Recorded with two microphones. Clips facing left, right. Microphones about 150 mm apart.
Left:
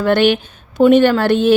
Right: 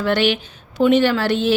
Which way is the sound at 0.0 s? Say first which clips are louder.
Left 5 dB; 50° left (ahead or behind).